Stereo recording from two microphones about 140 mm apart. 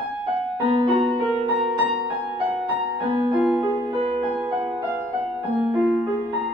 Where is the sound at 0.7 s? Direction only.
30° right (ahead or behind).